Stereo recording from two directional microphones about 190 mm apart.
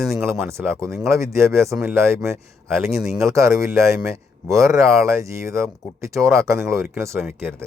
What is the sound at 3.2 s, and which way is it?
Speech, 15° right (ahead or behind).